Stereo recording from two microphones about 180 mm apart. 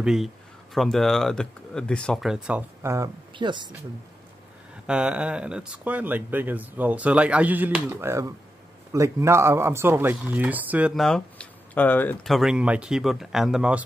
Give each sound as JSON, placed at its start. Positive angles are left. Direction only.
{"t": 0.0, "sound": "speech", "side_deg": -5}
{"t": 3.3, "sound": "speech", "side_deg": -25}
{"t": 4.8, "sound": "speech", "side_deg": -5}
{"t": 11.1, "sound": "speech", "side_deg": 5}
{"t": 12.3, "sound": "speech", "side_deg": 0}